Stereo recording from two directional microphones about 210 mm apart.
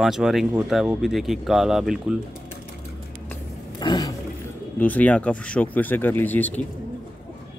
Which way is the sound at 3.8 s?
20° left (ahead or behind).